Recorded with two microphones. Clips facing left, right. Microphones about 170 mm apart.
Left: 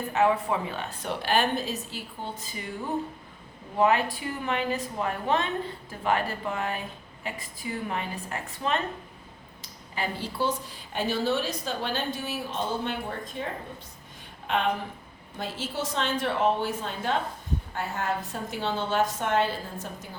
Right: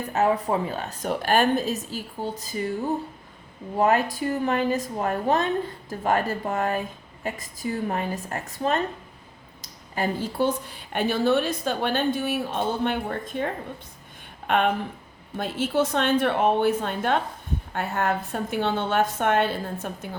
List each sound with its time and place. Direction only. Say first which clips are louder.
0.1 s a woman's voice: right 2 dB; 40° right (ahead or behind)
3.8 s a woman's voice: right 2 dB; 40° right (ahead or behind); by 20.1 s 60° right (ahead or behind)